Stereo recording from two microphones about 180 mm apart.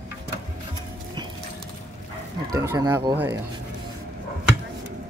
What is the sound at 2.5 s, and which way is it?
Speech, 20° right (ahead or behind).